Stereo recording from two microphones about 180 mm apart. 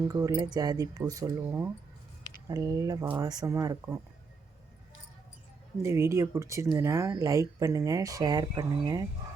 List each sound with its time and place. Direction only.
0.0 s speech: 15° right (ahead or behind)
5.8 s speech: 15° right (ahead or behind)